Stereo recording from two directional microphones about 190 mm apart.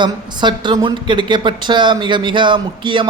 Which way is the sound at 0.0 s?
25° right (ahead or behind).